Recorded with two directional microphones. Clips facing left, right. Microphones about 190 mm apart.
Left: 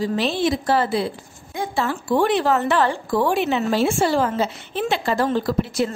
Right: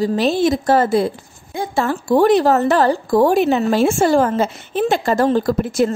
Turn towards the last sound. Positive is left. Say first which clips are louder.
# right 5 dB
turn(degrees=-45)  # may be behind; listen again after turning